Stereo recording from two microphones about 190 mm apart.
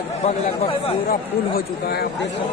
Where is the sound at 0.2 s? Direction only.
30° left (ahead or behind).